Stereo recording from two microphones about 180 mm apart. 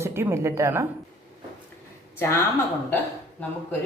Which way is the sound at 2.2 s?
15° left (ahead or behind).